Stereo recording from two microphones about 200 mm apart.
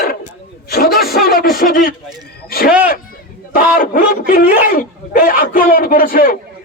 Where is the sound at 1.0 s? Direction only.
50° left (ahead or behind).